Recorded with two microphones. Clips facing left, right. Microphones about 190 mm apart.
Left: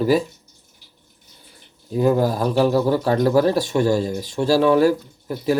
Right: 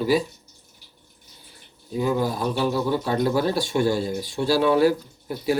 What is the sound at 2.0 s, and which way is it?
Speech, 45° left (ahead or behind).